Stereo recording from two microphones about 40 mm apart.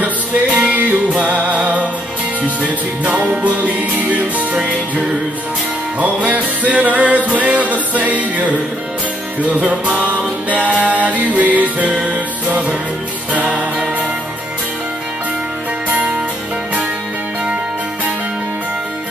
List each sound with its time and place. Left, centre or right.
0.0 s music: right
3.1 s music: right
5.9 s music: right
13.3 s music: right